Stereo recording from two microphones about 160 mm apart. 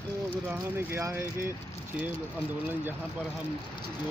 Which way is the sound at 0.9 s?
15° right (ahead or behind).